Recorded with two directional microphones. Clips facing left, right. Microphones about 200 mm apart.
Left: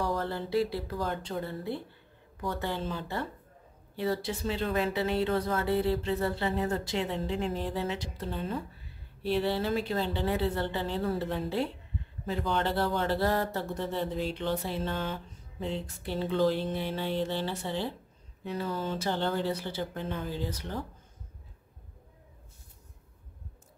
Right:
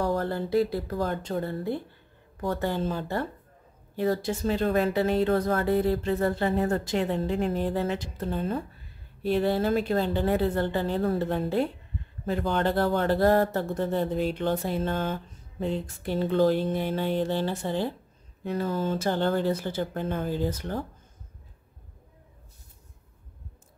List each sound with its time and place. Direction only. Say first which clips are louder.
0.0 s speech: right 4 dB; 45° right (ahead or behind)